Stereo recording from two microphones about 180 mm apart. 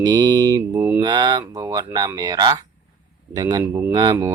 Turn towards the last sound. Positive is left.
turn(degrees=-20)  # may be behind; listen again after turning